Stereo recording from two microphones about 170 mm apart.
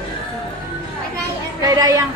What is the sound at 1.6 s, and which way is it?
Speech, 20° right (ahead or behind).